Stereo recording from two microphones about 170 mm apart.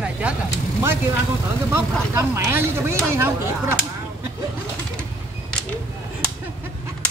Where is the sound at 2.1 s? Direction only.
15° right (ahead or behind).